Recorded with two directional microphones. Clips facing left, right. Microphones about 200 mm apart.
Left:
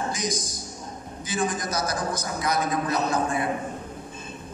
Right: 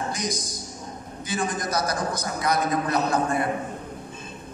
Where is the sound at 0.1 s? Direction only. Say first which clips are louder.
Even; 60° right (ahead or behind).